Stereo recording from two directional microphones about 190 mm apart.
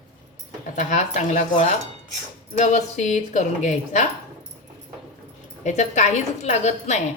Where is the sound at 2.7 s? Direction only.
40° left (ahead or behind).